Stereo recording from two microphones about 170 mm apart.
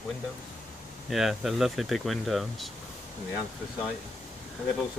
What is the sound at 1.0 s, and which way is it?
Speech, centre (ahead or behind).